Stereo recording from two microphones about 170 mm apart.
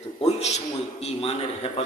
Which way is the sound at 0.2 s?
40° left (ahead or behind).